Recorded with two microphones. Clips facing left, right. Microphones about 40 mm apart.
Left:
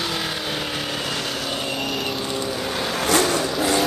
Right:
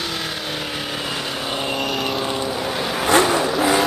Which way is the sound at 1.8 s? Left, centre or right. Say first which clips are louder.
Right 3 dB; centre.